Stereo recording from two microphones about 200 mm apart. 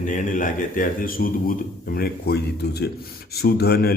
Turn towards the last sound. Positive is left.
turn(degrees=50)  # may be behind; listen again after turning